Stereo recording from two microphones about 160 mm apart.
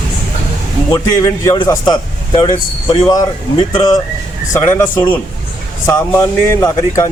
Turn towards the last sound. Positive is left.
turn(degrees=25)  # may be behind; listen again after turning